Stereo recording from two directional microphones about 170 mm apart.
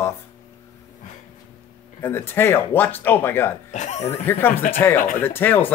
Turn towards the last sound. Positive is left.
turn(degrees=10)  # may be behind; listen again after turning